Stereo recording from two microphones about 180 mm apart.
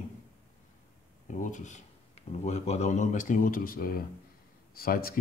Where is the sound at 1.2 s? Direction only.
45° left (ahead or behind).